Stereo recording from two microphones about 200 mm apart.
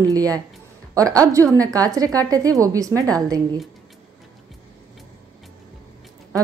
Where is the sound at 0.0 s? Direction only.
20° right (ahead or behind).